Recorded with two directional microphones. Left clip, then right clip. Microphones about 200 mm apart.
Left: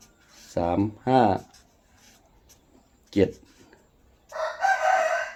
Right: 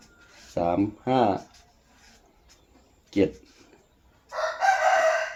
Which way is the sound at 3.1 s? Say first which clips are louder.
Left 1 dB; 55° left (ahead or behind).